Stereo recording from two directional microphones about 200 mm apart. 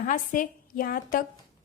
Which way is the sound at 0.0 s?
40° left (ahead or behind).